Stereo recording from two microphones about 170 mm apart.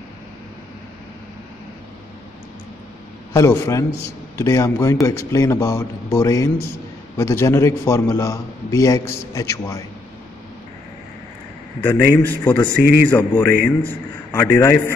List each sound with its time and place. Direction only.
3.3 s a man's voice: 15° left (ahead or behind)
11.8 s a man's voice: 10° left (ahead or behind)